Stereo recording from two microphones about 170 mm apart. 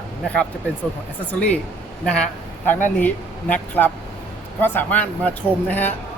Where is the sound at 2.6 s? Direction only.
10° left (ahead or behind).